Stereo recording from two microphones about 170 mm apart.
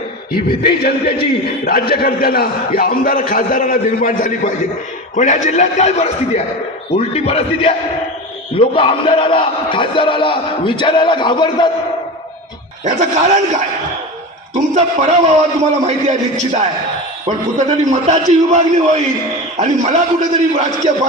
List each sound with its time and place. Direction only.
0.8 s a man's voice: 65° left (ahead or behind); by 11.7 s 25° left (ahead or behind)
12.8 s a man's voice: 45° right (ahead or behind)
17.2 s a man's voice: 45° right (ahead or behind)